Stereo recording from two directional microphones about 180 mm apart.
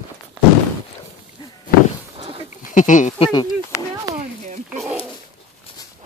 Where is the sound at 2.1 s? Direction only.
35° right (ahead or behind).